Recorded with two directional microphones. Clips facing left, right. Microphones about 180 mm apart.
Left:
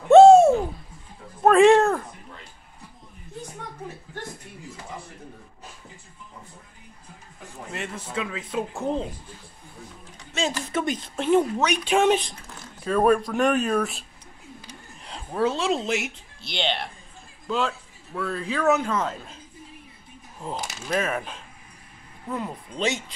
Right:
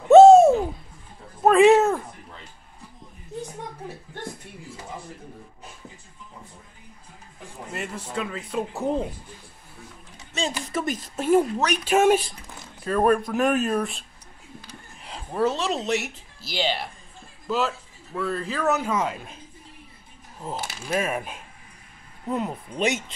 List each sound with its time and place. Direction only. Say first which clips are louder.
0.1 s a sound: right 1 dB; centre (ahead or behind)
7.7 s a man's voice: even; centre (ahead or behind)
10.7 s a man's voice: left 1 dB; centre (ahead or behind)
15.0 s a man's voice: right 1 dB; centre (ahead or behind)
20.3 s speech: even; 5° right (ahead or behind)